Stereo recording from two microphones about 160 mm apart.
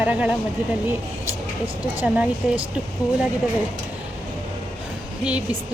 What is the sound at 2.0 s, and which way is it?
Speech, 10° right (ahead or behind).